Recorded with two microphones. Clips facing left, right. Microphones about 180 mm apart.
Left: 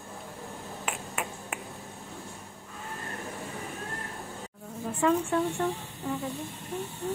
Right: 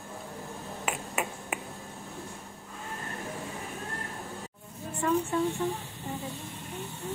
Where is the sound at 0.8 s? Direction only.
5° right (ahead or behind).